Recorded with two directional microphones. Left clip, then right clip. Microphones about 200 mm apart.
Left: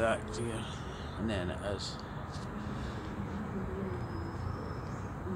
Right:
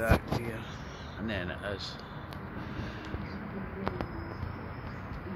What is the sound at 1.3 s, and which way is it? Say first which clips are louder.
Speech: right 1 dB; 10° left (ahead or behind).